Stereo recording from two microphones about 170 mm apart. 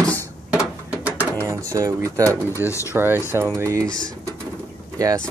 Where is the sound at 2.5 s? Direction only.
15° left (ahead or behind).